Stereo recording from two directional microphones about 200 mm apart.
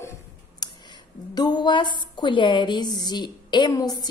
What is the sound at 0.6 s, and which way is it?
Clicking, 20° left (ahead or behind).